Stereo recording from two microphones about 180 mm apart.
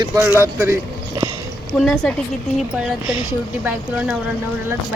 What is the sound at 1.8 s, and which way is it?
Speech, centre (ahead or behind).